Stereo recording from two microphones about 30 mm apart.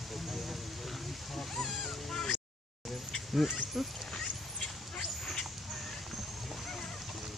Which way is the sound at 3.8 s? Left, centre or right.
Centre.